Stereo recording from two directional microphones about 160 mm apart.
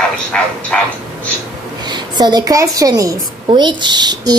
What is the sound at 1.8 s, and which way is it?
A woman's voice, 25° right (ahead or behind).